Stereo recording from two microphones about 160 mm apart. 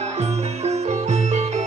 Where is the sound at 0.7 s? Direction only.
45° right (ahead or behind).